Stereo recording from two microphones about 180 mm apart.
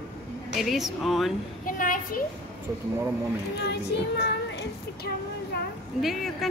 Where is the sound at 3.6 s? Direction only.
70° left (ahead or behind).